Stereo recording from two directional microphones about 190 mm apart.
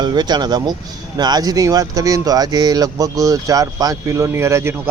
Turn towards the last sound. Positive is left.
turn(degrees=-15)  # may be behind; listen again after turning